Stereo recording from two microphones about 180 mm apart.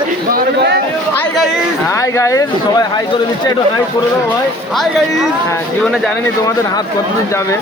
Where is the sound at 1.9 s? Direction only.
15° left (ahead or behind).